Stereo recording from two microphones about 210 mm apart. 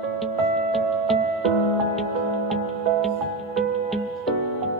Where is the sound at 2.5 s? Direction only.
Centre (ahead or behind).